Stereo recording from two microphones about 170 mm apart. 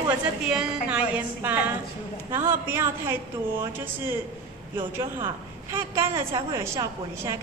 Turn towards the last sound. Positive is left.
turn(degrees=-15)  # may be behind; listen again after turning